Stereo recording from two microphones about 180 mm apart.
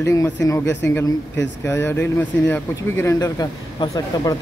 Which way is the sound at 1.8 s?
10° left (ahead or behind).